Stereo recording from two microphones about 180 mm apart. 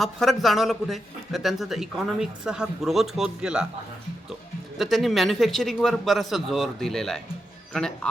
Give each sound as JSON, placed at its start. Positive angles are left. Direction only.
{"t": 0.0, "sound": "a man's voice", "side_deg": 0}
{"t": 4.8, "sound": "a man's voice", "side_deg": 0}